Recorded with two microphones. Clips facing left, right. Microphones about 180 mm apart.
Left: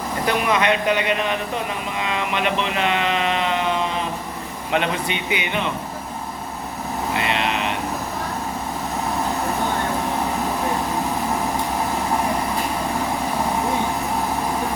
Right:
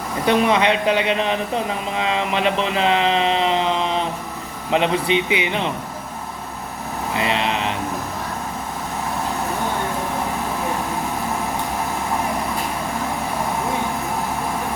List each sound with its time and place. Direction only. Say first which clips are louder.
0.3 s speech: right 3 dB; 30° right (ahead or behind)